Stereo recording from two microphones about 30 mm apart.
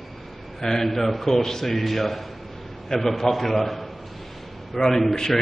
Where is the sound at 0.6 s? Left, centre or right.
Centre.